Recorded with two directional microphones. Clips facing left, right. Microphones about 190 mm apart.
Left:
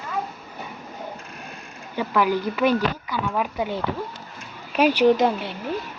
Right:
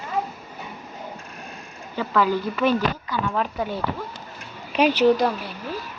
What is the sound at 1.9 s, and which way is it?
Speech, 15° left (ahead or behind).